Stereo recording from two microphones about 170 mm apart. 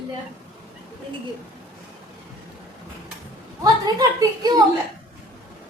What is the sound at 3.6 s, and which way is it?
Speech, 25° right (ahead or behind).